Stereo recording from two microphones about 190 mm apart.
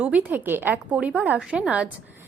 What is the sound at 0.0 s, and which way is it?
Speech, 5° right (ahead or behind).